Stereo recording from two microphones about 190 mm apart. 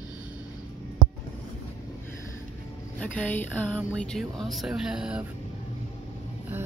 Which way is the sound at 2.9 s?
10° left (ahead or behind).